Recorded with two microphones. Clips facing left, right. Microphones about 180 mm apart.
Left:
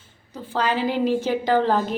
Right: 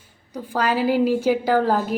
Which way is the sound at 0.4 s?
10° right (ahead or behind).